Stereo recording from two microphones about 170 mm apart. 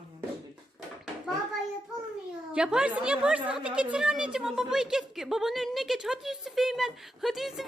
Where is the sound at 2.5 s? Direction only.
5° right (ahead or behind).